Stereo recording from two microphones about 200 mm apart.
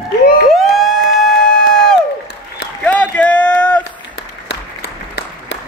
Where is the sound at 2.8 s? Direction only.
5° left (ahead or behind).